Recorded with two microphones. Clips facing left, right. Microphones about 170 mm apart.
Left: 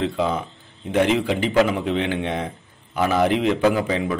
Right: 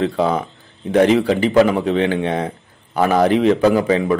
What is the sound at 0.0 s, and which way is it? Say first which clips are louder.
Speech: right 5 dB; 40° right (ahead or behind).